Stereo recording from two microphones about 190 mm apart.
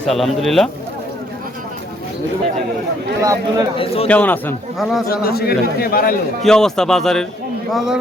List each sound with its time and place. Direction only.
0.0 s a man's voice: centre (ahead or behind)
3.2 s a man's voice: 20° right (ahead or behind)
3.8 s a man's voice: 30° left (ahead or behind)
4.1 s a man's voice: 10° left (ahead or behind)
5.0 s a man's voice: 50° left (ahead or behind)
6.4 s a man's voice: centre (ahead or behind)